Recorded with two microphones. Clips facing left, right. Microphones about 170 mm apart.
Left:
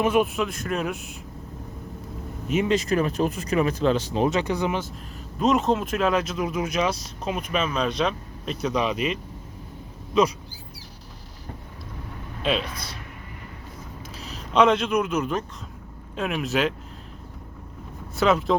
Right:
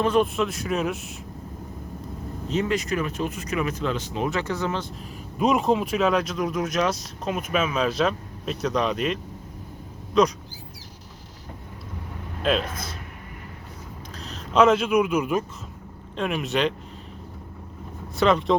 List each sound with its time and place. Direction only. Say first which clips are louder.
0.0 s speech: even; 10° left (ahead or behind)
2.6 s speech: left 3 dB; 30° left (ahead or behind)
4.3 s speech: left 2 dB; 15° left (ahead or behind)
5.4 s speech: even; centre (ahead or behind)
10.1 s speech: right 1 dB; 5° left (ahead or behind)
12.4 s speech: right 2 dB; centre (ahead or behind)
14.2 s speech: right 1 dB; centre (ahead or behind)
16.1 s speech: even; centre (ahead or behind)
18.2 s speech: right 1 dB; centre (ahead or behind)